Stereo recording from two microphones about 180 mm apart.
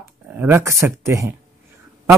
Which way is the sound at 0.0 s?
10° right (ahead or behind).